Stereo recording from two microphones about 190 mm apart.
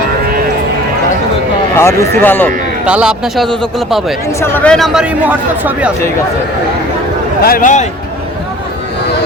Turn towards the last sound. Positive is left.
turn(degrees=45)  # may be behind; listen again after turning